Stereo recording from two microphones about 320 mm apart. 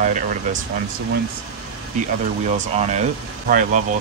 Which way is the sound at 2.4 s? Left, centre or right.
Right.